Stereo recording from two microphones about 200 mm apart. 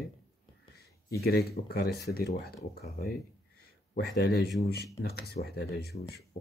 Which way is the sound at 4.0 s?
60° left (ahead or behind).